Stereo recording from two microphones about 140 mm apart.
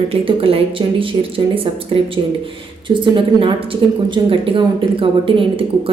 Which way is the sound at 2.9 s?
35° right (ahead or behind).